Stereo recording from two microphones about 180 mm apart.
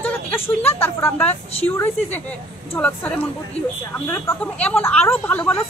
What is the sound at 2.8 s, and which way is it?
A woman's voice, 10° left (ahead or behind).